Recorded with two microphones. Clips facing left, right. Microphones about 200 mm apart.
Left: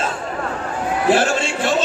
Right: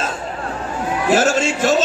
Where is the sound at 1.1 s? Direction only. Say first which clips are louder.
Right 2 dB; 45° right (ahead or behind).